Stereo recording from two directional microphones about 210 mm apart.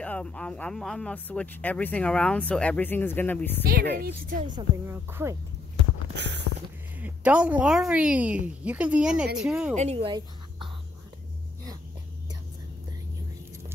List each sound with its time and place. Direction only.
0.0 s speech: 5° left (ahead or behind)
4.0 s a woman's voice: 40° right (ahead or behind)
4.5 s speech: 20° right (ahead or behind)
6.1 s a sound: 55° right (ahead or behind)
7.0 s a woman's voice: 5° right (ahead or behind)
9.8 s speech: 30° right (ahead or behind)